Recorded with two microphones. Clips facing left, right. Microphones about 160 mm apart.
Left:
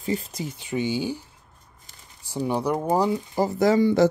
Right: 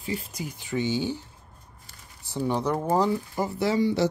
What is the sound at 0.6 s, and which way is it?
Speech, 15° left (ahead or behind).